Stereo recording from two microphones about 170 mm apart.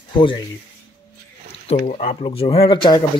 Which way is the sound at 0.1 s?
30° left (ahead or behind).